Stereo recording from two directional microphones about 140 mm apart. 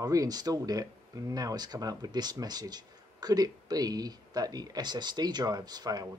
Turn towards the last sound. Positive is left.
turn(degrees=-30)  # may be behind; listen again after turning